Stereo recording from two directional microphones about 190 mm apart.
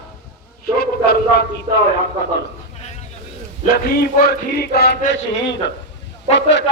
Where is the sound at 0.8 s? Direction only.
55° left (ahead or behind).